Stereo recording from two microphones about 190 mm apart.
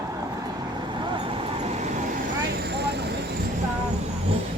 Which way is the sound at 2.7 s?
60° right (ahead or behind).